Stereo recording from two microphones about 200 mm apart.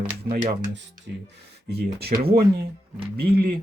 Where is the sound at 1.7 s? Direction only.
55° right (ahead or behind).